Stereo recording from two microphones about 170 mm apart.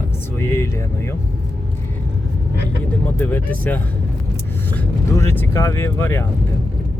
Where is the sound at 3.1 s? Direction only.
10° left (ahead or behind).